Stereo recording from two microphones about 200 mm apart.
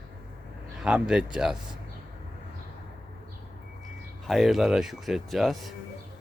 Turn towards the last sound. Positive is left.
turn(degrees=0)  # may be behind; listen again after turning